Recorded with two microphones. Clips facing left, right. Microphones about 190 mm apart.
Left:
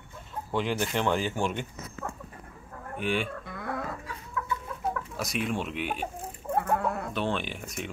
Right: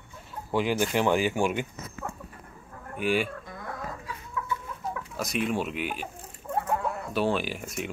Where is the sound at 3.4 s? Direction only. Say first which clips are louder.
Left 2 dB; 65° left (ahead or behind).